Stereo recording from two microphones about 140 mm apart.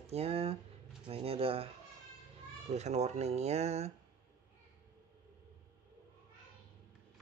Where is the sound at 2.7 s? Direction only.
50° right (ahead or behind).